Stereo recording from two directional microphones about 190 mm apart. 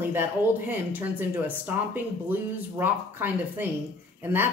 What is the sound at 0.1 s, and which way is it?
Speech, 10° right (ahead or behind).